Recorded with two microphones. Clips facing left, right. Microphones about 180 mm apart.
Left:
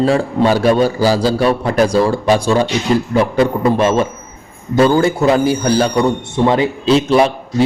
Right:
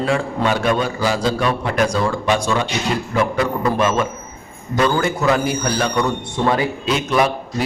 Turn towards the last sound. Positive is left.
turn(degrees=30)  # may be behind; listen again after turning